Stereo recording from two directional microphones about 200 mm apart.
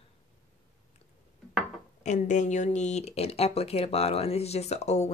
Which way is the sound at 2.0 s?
35° left (ahead or behind).